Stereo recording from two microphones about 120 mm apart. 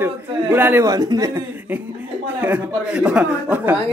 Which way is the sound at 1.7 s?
15° right (ahead or behind).